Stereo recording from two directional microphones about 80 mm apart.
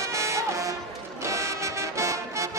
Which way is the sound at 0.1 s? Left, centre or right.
Right.